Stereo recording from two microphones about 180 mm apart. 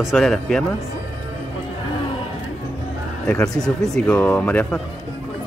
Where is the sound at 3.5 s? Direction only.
5° left (ahead or behind).